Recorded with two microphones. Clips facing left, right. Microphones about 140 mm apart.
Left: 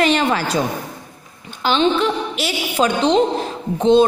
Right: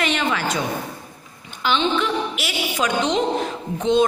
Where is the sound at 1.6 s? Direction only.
35° left (ahead or behind).